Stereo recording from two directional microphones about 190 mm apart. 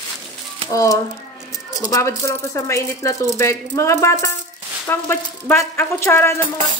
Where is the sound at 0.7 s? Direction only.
15° left (ahead or behind).